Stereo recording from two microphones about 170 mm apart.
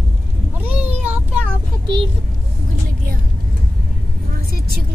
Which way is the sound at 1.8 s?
30° right (ahead or behind).